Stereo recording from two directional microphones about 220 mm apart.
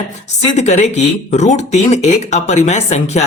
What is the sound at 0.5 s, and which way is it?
Speech, 30° left (ahead or behind).